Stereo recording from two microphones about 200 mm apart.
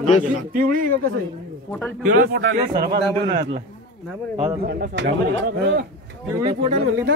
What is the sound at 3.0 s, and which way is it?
Speech, 25° right (ahead or behind).